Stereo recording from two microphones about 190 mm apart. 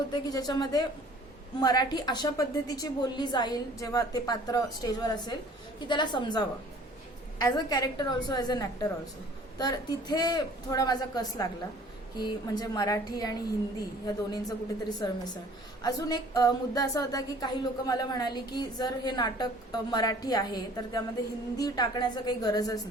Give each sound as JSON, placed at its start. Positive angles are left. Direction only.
{"t": 0.1, "sound": "speech", "side_deg": 20}
{"t": 14.4, "sound": "speech", "side_deg": 20}